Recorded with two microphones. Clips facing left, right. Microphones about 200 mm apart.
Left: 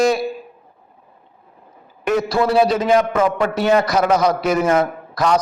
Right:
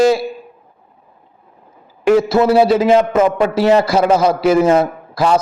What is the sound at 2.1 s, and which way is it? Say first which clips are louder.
A man's voice: right 6 dB; 25° right (ahead or behind).